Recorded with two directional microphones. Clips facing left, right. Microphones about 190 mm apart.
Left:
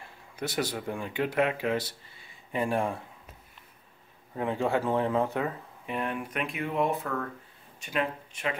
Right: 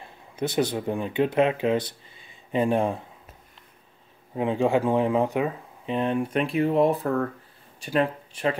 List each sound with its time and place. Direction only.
0.0 s speech: 20° right (ahead or behind)
4.4 s speech: 15° right (ahead or behind); by 8.5 s 35° right (ahead or behind)